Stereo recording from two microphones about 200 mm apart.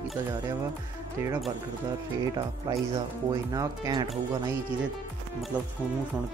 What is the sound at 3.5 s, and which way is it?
Speech, 20° right (ahead or behind).